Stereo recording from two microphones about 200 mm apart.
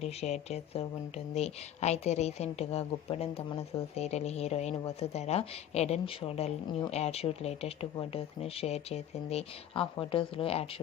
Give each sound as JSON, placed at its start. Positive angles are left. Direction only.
{"t": 0.0, "sound": "a woman's voice", "side_deg": 30}